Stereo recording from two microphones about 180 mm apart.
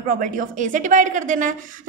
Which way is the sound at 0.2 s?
45° right (ahead or behind).